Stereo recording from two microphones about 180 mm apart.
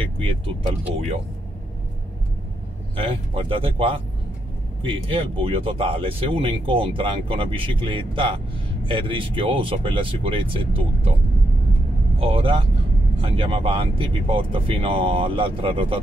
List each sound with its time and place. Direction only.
3.0 s speech: 30° right (ahead or behind)
12.2 s speech: 30° right (ahead or behind)